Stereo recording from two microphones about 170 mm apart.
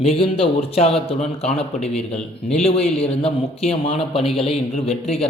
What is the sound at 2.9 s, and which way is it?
A man's voice, 35° left (ahead or behind).